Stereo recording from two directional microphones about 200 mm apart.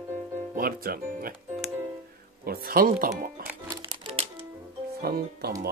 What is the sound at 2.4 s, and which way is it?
Speech, 50° right (ahead or behind).